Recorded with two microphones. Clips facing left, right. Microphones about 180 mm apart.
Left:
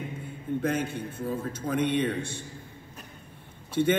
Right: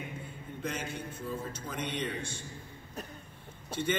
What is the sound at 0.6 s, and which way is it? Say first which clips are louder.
A man's voice: left 8 dB; 55° left (ahead or behind).